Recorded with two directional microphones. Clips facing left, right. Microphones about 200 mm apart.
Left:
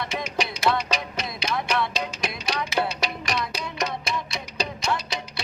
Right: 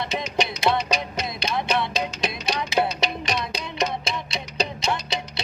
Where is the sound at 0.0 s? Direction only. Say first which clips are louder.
Right 2 dB; 25° right (ahead or behind).